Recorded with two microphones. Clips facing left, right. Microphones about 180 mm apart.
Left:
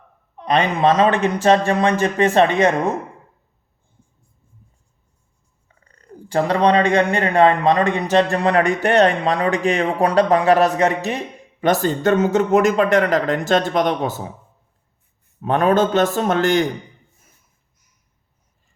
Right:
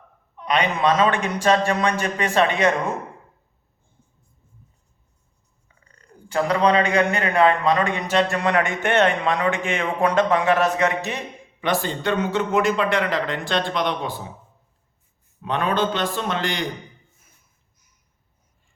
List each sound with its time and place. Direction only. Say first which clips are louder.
0.3 s a man's voice: left 4 dB; 35° left (ahead or behind)
1.4 s speech: left 3 dB; 25° left (ahead or behind)
6.3 s a man's voice: left 3 dB; 35° left (ahead or behind)
15.4 s speech: left 6 dB; 45° left (ahead or behind)